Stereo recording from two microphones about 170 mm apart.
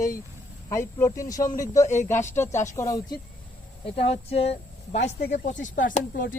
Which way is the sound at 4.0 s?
35° left (ahead or behind).